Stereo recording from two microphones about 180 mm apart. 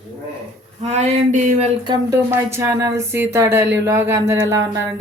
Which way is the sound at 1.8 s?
20° right (ahead or behind).